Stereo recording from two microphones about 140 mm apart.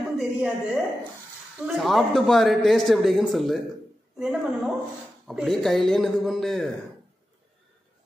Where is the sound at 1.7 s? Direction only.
Centre (ahead or behind).